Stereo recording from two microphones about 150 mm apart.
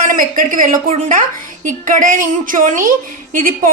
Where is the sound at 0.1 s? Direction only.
65° right (ahead or behind).